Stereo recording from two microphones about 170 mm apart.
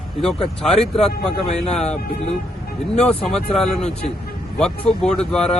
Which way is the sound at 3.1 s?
Centre (ahead or behind).